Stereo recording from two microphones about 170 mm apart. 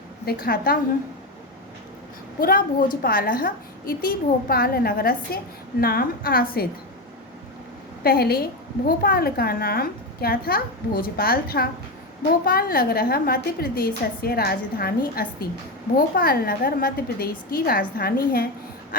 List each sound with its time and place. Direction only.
0.3 s a woman's voice: 60° left (ahead or behind)
2.4 s a woman's voice: 60° left (ahead or behind)
8.0 s a woman's voice: 65° left (ahead or behind)